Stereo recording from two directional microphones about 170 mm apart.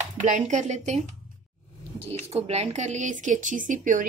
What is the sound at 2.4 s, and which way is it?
Speech, 40° right (ahead or behind).